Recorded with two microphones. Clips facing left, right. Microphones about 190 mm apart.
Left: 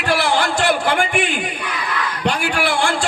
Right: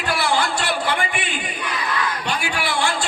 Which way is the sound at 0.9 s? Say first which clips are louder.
Left 6 dB; 75° left (ahead or behind).